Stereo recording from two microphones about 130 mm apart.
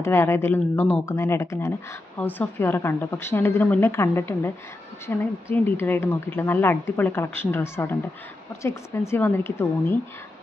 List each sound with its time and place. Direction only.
0.0 s speech: 20° left (ahead or behind)